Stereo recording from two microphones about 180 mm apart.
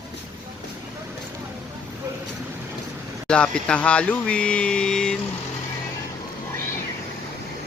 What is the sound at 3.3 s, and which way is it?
Speech, 5° left (ahead or behind).